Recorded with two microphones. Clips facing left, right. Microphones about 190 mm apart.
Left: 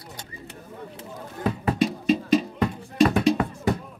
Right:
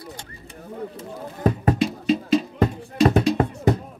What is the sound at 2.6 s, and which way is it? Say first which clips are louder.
Music: right 1 dB; 40° right (ahead or behind).